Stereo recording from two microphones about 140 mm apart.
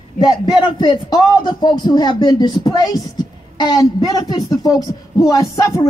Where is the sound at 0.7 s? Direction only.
30° left (ahead or behind).